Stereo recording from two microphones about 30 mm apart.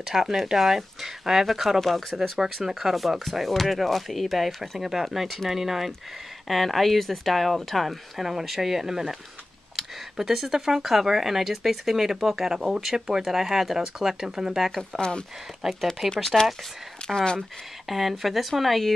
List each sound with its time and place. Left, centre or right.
0.0 s speech: centre
1.8 s speech: centre
2.3 s speech: centre
3.3 s speech: centre
8.2 s speech: centre
13.2 s speech: centre
15.0 s speech: left
15.6 s speech: centre
17.1 s speech: left
17.8 s speech: centre